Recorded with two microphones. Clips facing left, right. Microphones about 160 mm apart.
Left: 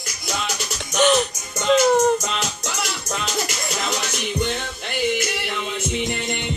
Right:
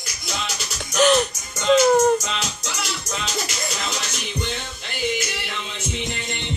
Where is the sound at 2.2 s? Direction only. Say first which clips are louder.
Left 2 dB; 50° left (ahead or behind).